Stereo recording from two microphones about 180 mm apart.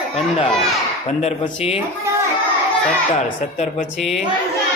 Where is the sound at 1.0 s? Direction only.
40° left (ahead or behind).